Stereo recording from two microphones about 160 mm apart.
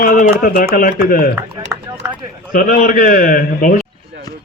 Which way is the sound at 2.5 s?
60° left (ahead or behind).